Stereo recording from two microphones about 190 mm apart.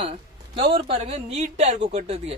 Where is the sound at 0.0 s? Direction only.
25° right (ahead or behind).